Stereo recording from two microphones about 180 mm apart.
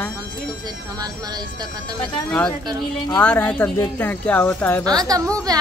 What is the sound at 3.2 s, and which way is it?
Speech, 5° left (ahead or behind).